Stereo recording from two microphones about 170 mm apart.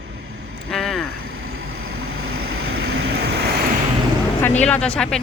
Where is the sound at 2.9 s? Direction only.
75° right (ahead or behind).